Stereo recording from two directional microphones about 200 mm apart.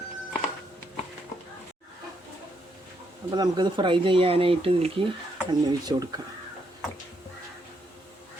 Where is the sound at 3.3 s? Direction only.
20° right (ahead or behind).